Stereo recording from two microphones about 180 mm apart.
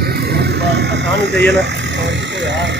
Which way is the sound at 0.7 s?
70° right (ahead or behind).